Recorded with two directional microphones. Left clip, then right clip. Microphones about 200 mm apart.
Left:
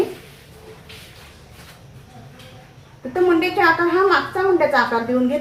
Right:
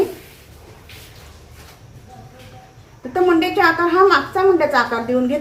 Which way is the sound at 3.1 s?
15° right (ahead or behind).